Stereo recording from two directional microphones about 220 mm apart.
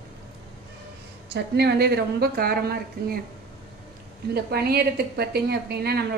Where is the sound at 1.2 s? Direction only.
50° right (ahead or behind).